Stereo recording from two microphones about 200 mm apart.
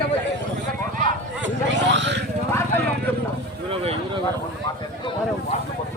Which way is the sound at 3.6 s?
30° right (ahead or behind).